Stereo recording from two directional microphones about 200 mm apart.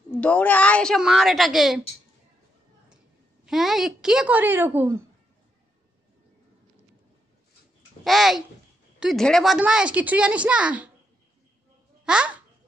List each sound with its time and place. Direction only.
0.2 s speech: 5° left (ahead or behind)
3.4 s speech: centre (ahead or behind)
8.0 s speech: centre (ahead or behind)
12.0 s babbling: 5° right (ahead or behind)